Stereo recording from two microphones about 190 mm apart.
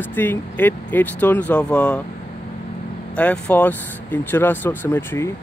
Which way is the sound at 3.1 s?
5° left (ahead or behind).